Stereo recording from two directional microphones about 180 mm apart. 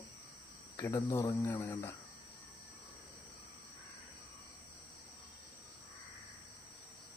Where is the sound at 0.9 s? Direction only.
20° left (ahead or behind).